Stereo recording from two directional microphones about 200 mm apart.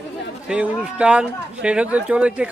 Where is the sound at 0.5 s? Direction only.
5° right (ahead or behind).